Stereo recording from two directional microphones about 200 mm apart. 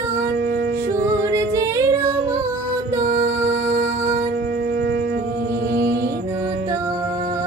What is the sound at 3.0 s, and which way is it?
Music, 50° right (ahead or behind).